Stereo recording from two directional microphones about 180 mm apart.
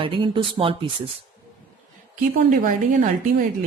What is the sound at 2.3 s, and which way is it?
A woman's voice, 50° right (ahead or behind).